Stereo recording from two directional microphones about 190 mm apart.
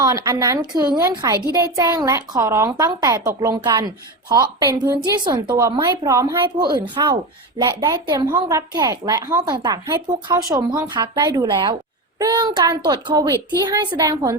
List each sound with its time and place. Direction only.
0.0 s a woman's voice: 15° right (ahead or behind)